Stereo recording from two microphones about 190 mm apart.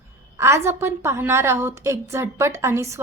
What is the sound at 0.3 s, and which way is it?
Speech, 15° right (ahead or behind).